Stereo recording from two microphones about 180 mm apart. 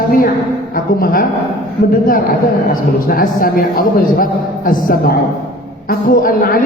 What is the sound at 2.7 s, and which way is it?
A man's voice, 55° left (ahead or behind).